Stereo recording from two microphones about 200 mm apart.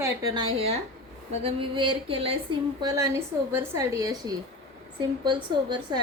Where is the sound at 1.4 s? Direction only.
25° right (ahead or behind).